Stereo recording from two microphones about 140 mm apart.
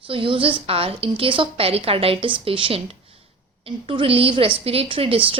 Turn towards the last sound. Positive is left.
turn(degrees=-40)  # may be behind; listen again after turning